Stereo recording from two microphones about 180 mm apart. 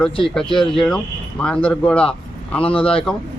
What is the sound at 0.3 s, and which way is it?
Speech, centre (ahead or behind).